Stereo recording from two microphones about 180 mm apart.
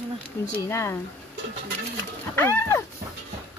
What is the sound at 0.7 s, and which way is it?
Speech, 15° left (ahead or behind).